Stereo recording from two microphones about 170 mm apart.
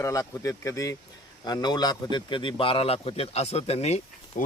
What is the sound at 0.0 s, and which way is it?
A man's voice, 20° left (ahead or behind).